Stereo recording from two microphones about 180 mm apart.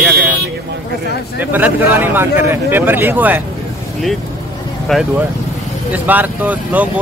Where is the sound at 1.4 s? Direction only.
10° right (ahead or behind).